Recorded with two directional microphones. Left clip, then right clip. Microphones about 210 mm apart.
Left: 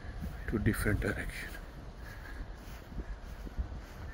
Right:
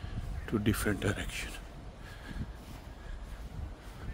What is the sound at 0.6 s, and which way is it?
Speech, 15° right (ahead or behind).